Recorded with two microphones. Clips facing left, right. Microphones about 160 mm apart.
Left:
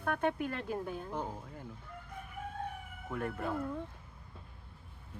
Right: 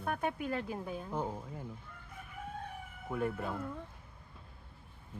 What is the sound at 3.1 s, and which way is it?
Speech, 5° right (ahead or behind).